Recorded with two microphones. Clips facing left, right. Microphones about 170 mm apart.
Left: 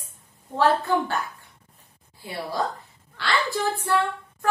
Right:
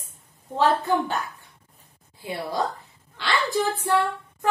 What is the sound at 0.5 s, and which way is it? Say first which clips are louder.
Speech: even; 20° right (ahead or behind).